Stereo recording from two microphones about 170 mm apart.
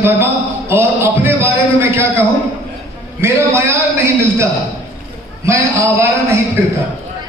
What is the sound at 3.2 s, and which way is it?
Speech, 15° right (ahead or behind).